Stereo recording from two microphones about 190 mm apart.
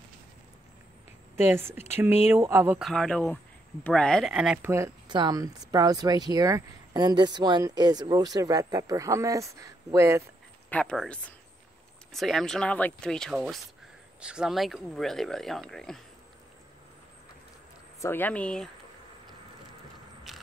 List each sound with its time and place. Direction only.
1.3 s speech: 10° right (ahead or behind)
2.8 s speech: centre (ahead or behind); by 10.2 s 15° right (ahead or behind)
10.7 s speech: 5° left (ahead or behind)
18.0 s speech: 10° left (ahead or behind)
20.3 s mechanisms: centre (ahead or behind)